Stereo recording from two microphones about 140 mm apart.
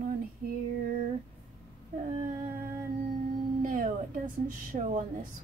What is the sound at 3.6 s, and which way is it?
Speech, 70° right (ahead or behind).